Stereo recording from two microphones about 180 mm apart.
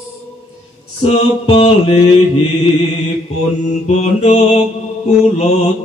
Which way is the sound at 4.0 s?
40° left (ahead or behind).